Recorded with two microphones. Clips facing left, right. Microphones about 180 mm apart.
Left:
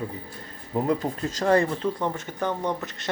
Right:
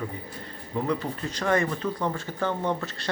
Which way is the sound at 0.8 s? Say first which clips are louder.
Left 3 dB; 40° left (ahead or behind).